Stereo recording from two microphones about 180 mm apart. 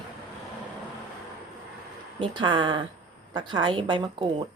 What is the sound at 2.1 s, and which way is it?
A woman's voice, 25° right (ahead or behind).